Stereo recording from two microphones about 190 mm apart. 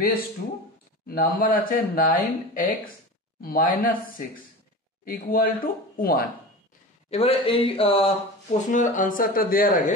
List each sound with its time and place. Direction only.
1.0 s speech: 50° left (ahead or behind)
5.0 s speech: 50° left (ahead or behind)
7.1 s speech: 30° left (ahead or behind); by 9.9 s 45° left (ahead or behind)